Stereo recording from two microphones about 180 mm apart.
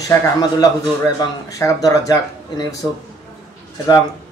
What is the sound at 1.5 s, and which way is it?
Speech, 20° left (ahead or behind).